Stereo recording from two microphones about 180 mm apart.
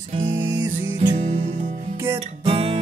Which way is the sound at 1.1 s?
40° right (ahead or behind).